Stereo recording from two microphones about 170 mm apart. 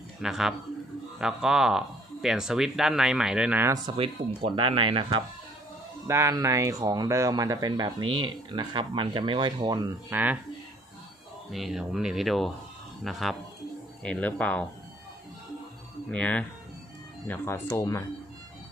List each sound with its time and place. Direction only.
0.2 s speech: centre (ahead or behind)
4.4 s speech: 30° right (ahead or behind)
6.0 s speech: 15° right (ahead or behind)
10.1 s speech: 10° right (ahead or behind)
11.5 s speech: centre (ahead or behind)
16.1 s speech: 5° left (ahead or behind)